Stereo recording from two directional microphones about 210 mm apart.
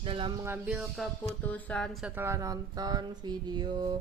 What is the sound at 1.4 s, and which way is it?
Speech, 5° left (ahead or behind).